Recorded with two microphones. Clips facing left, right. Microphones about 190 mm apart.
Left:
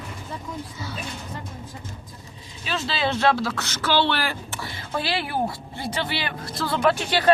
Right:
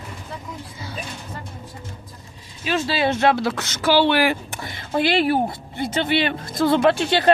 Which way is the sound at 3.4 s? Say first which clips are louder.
Right 4 dB; 20° right (ahead or behind).